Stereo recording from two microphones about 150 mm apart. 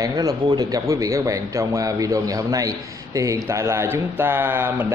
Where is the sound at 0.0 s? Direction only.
25° right (ahead or behind).